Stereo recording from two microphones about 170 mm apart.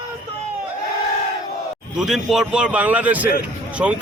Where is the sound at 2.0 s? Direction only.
5° right (ahead or behind).